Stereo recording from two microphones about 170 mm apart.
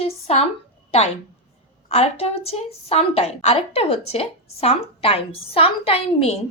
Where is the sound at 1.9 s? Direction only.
35° left (ahead or behind).